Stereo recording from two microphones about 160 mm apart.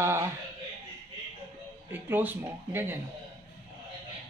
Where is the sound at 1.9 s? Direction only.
10° right (ahead or behind).